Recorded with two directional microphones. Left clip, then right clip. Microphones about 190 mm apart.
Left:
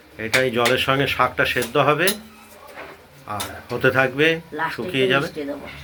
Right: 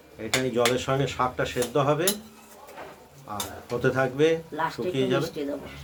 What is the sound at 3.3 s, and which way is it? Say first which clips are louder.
Speech: left 4 dB; 25° left (ahead or behind).